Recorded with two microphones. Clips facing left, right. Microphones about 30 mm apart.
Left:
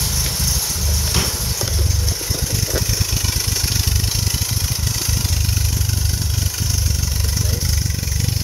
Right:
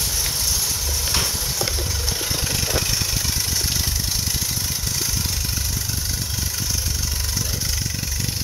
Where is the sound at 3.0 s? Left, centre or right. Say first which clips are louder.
Left 1 dB; centre.